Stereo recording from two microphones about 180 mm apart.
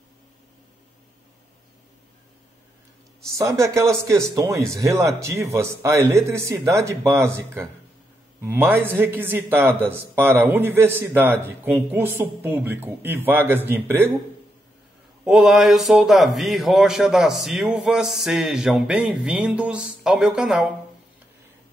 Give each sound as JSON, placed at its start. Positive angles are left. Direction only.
{"t": 3.3, "sound": "speech", "side_deg": -15}
{"t": 15.2, "sound": "speech", "side_deg": 0}